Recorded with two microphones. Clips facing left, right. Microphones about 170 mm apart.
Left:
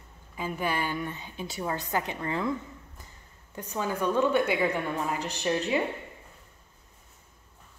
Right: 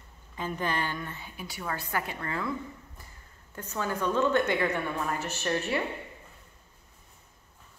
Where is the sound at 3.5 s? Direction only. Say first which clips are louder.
Left 1 dB; 15° left (ahead or behind).